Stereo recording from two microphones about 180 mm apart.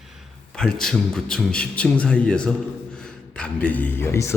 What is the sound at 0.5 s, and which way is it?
A man's voice, 5° left (ahead or behind).